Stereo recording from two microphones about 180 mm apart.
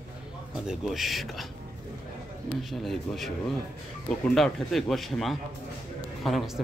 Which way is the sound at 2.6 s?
Centre (ahead or behind).